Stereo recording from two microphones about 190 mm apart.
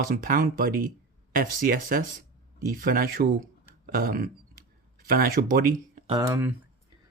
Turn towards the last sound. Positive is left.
turn(degrees=-15)  # may be behind; listen again after turning